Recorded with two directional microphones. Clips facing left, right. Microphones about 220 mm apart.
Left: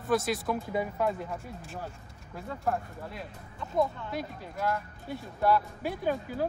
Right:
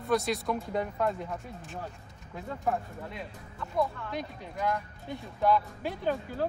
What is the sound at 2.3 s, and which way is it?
Speech, centre (ahead or behind).